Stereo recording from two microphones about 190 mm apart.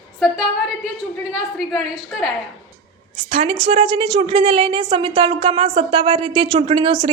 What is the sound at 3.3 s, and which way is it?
A woman's voice, 30° right (ahead or behind).